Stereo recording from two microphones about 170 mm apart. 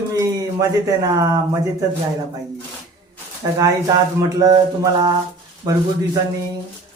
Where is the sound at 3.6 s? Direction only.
20° right (ahead or behind).